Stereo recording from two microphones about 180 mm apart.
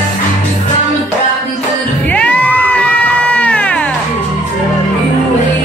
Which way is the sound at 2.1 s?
10° left (ahead or behind).